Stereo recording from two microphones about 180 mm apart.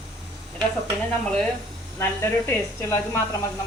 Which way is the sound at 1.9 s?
15° left (ahead or behind).